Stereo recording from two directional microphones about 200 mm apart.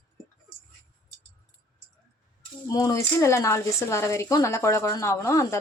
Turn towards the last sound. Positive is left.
turn(degrees=15)  # may be behind; listen again after turning